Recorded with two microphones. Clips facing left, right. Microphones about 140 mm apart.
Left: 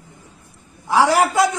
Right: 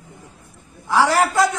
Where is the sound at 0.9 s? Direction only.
20° left (ahead or behind).